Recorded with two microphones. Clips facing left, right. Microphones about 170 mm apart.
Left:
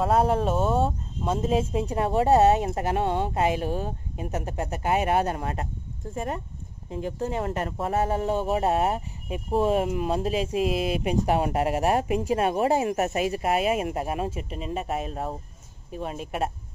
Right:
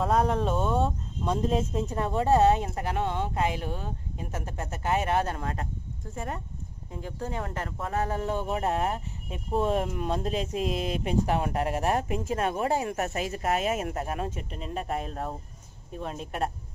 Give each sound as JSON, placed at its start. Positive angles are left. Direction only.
{"t": 0.0, "sound": "speech", "side_deg": 5}
{"t": 3.6, "sound": "speech", "side_deg": 40}
{"t": 4.2, "sound": "speech", "side_deg": 15}
{"t": 9.5, "sound": "speech", "side_deg": 5}